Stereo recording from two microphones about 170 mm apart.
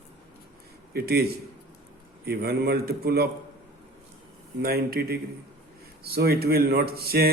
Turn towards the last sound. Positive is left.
turn(degrees=-65)  # may be behind; listen again after turning